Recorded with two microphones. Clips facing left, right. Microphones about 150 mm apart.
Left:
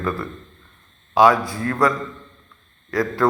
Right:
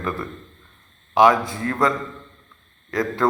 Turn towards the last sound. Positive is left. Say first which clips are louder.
# left 2 dB
turn(degrees=-20)  # may be behind; listen again after turning